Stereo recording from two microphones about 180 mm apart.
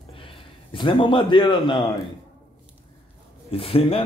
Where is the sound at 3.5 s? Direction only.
30° left (ahead or behind).